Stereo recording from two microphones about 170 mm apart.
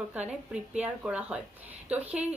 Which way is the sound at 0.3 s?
5° right (ahead or behind).